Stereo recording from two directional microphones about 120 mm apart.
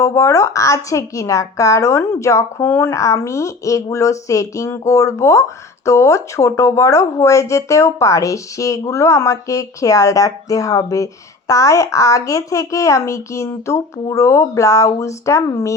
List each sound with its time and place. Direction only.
0.0 s a woman's voice: 25° left (ahead or behind)